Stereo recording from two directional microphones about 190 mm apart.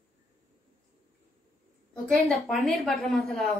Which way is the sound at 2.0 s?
5° left (ahead or behind).